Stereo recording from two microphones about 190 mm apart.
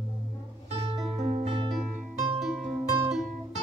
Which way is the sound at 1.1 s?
35° right (ahead or behind).